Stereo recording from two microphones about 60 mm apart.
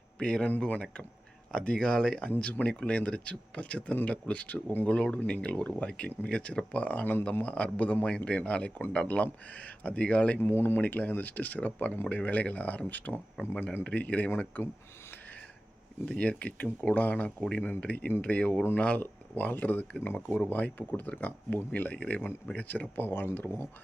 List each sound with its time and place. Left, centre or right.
0.2 s speech: centre
5.1 s speech: centre
10.4 s speech: left
10.8 s speech: left
16.0 s speech: centre
16.4 s speech: left